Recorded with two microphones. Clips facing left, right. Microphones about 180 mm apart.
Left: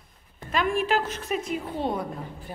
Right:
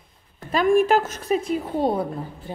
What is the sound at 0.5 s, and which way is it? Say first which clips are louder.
A woman's voice: right 7 dB; 45° right (ahead or behind).